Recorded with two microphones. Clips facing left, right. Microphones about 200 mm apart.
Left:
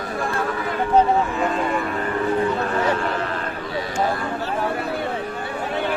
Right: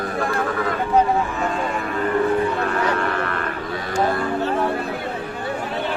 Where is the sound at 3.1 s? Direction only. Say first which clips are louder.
Right 1 dB; 60° right (ahead or behind).